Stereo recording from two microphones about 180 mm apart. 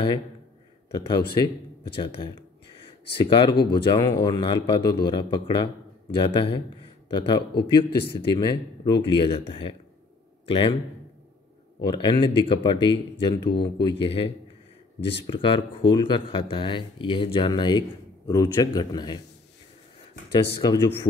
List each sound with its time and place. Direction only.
0.9 s speech: 25° left (ahead or behind)
11.8 s speech: 25° left (ahead or behind)
15.0 s speech: 75° left (ahead or behind)
15.2 s speech: 30° left (ahead or behind)
20.6 s speech: 25° left (ahead or behind)